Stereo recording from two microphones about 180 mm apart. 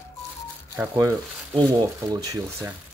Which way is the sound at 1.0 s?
20° right (ahead or behind).